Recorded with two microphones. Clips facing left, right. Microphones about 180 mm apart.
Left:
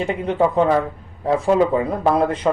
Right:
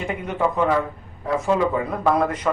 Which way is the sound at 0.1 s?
30° left (ahead or behind).